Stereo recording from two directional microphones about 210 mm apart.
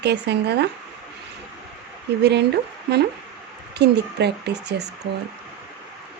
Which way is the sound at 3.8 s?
55° right (ahead or behind).